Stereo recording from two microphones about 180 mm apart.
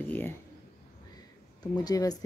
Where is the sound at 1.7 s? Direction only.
20° left (ahead or behind).